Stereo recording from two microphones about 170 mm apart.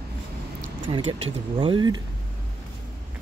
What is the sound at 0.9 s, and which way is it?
Speech, 30° right (ahead or behind).